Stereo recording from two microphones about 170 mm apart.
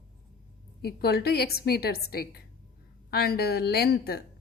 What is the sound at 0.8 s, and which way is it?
A woman's voice, 70° left (ahead or behind).